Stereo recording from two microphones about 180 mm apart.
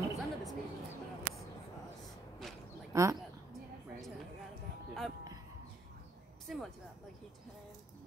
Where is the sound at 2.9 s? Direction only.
15° right (ahead or behind).